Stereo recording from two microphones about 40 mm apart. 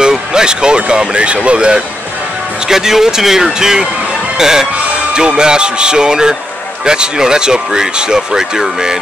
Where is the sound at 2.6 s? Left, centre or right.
Centre.